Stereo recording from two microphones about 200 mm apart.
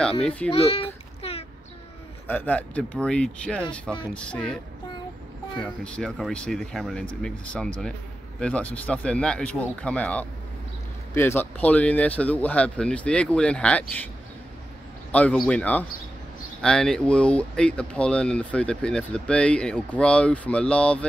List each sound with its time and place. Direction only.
0.2 s speech: 5° left (ahead or behind)
0.5 s a sound: 30° left (ahead or behind)
2.2 s speech: 10° left (ahead or behind)
5.6 s speech: 5° left (ahead or behind)
15.0 s speech: 5° left (ahead or behind)